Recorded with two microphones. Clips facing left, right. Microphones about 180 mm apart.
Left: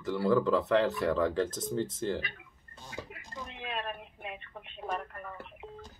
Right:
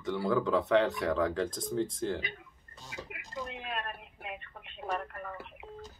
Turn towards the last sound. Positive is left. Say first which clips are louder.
# right 2 dB
turn(degrees=0)  # may be behind; listen again after turning